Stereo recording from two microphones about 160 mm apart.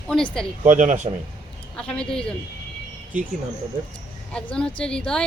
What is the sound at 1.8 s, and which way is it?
Speech, 5° left (ahead or behind).